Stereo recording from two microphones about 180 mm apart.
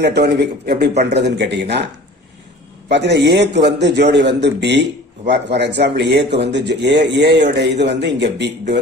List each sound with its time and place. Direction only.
0.0 s a man's voice: 65° right (ahead or behind)
2.9 s a man's voice: 70° right (ahead or behind)